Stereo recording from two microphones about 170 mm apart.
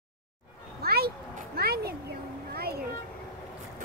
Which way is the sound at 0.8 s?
65° right (ahead or behind).